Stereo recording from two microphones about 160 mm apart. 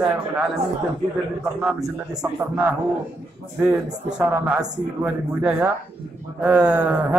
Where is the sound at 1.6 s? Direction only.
5° right (ahead or behind).